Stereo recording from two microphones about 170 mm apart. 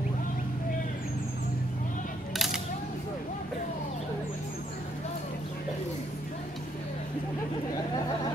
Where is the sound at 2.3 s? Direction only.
Centre (ahead or behind).